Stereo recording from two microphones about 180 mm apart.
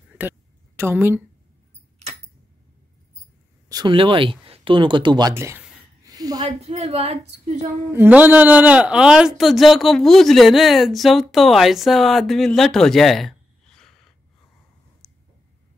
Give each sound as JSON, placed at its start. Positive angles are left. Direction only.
{"t": 0.7, "sound": "a woman's voice", "side_deg": -15}
{"t": 3.6, "sound": "speech", "side_deg": -25}
{"t": 6.4, "sound": "a woman's voice", "side_deg": -35}
{"t": 7.9, "sound": "a man's voice", "side_deg": -10}
{"t": 15.0, "sound": "a sound", "side_deg": 15}